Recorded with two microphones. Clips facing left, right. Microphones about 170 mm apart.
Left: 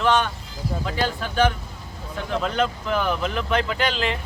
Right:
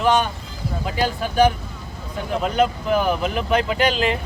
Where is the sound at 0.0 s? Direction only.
15° right (ahead or behind).